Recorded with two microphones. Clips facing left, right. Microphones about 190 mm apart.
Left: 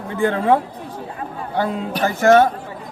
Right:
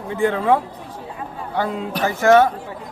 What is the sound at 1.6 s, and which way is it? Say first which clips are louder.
Speech: left 1 dB; 35° left (ahead or behind).